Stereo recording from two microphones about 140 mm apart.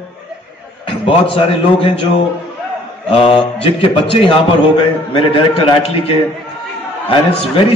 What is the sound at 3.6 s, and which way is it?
A man's voice, 40° left (ahead or behind).